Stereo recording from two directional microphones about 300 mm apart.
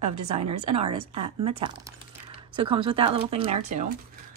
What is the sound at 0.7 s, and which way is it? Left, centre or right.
A woman's voice, centre.